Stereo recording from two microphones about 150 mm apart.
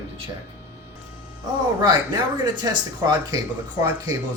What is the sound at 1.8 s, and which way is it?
Speech, 30° right (ahead or behind).